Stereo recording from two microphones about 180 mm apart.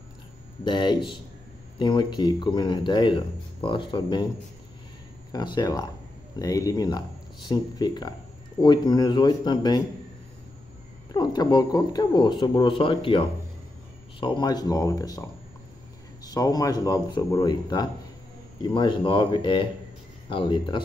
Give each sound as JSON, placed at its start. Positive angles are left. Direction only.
{"t": 0.7, "sound": "speech", "side_deg": 25}
{"t": 5.3, "sound": "speech", "side_deg": 25}
{"t": 11.1, "sound": "speech", "side_deg": 25}
{"t": 16.3, "sound": "speech", "side_deg": 20}